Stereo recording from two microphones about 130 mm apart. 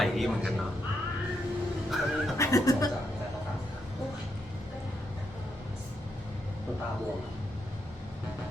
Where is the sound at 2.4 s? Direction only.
25° left (ahead or behind).